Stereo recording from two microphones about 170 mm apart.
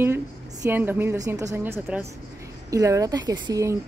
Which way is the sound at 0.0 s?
15° right (ahead or behind).